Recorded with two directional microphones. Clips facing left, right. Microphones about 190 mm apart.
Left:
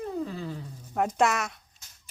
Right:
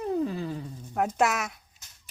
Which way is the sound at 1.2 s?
5° right (ahead or behind).